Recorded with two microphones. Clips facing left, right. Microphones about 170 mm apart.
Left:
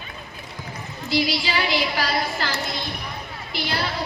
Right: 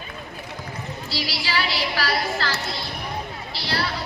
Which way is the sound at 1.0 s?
20° left (ahead or behind).